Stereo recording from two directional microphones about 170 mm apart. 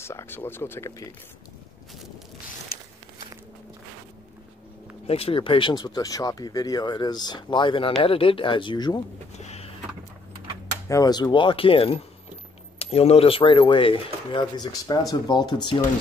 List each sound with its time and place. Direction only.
0.0 s speech: 15° left (ahead or behind)
5.0 s speech: 35° left (ahead or behind)
9.4 s vehicle: 40° left (ahead or behind)
10.9 s speech: 20° left (ahead or behind)